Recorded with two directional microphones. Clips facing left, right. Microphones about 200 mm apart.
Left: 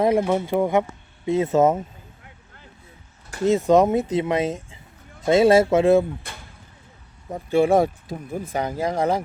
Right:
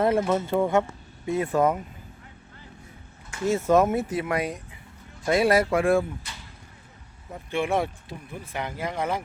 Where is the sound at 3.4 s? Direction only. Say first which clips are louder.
Left 4 dB; 20° left (ahead or behind).